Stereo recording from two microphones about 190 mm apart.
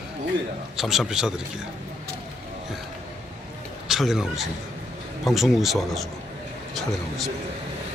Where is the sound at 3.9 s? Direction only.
Centre (ahead or behind).